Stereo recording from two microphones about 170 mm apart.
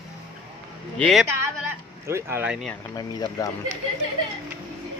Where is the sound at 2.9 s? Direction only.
20° left (ahead or behind).